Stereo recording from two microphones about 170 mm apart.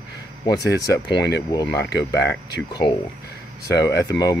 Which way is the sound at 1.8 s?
85° left.